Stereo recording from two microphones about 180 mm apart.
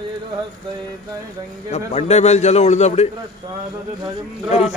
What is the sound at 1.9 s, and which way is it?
A man's voice, 35° left (ahead or behind).